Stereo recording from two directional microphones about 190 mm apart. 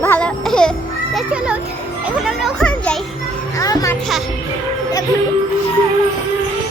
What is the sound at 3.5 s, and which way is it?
Music, 20° left (ahead or behind).